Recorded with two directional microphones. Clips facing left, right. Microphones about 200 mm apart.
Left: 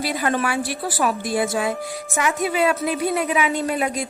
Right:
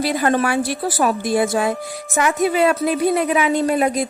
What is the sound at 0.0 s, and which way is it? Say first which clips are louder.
A woman's voice: right 4 dB; 45° right (ahead or behind).